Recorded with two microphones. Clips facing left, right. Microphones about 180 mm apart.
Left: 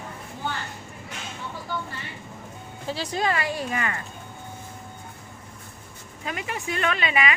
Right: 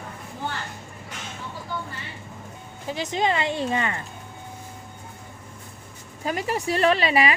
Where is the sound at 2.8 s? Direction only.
20° right (ahead or behind).